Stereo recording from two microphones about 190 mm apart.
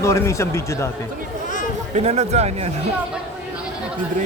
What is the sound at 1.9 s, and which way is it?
Speech, 35° right (ahead or behind).